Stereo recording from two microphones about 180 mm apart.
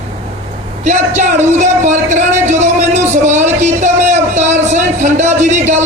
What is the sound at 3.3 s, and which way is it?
Music, 40° right (ahead or behind).